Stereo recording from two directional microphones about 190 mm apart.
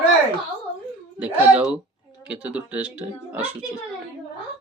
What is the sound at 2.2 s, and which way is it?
Speech, 5° right (ahead or behind).